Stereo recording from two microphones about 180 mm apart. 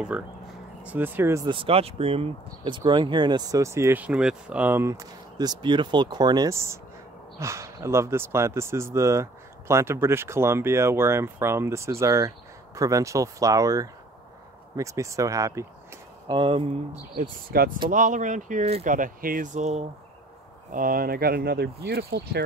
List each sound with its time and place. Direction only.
0.1 s speech: 5° right (ahead or behind)
1.5 s speech: 30° right (ahead or behind)
16.3 s speech: 30° right (ahead or behind)
17.2 s speech: 55° right (ahead or behind)
20.7 s speech: 50° right (ahead or behind)